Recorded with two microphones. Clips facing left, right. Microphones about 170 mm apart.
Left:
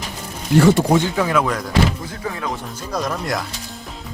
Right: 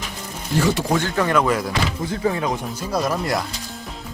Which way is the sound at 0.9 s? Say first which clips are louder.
Left 4 dB; 15° left (ahead or behind).